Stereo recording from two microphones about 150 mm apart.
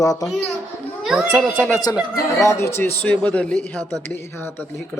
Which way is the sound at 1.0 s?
5° right (ahead or behind).